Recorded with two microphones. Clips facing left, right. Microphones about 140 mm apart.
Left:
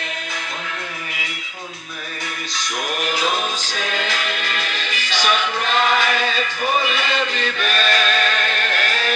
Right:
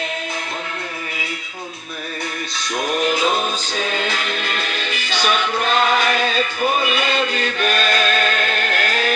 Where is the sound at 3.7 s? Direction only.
35° right (ahead or behind).